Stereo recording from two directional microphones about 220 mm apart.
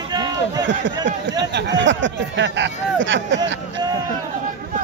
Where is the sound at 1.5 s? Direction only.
55° right (ahead or behind).